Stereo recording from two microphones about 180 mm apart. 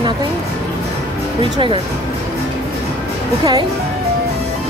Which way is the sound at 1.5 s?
25° right (ahead or behind).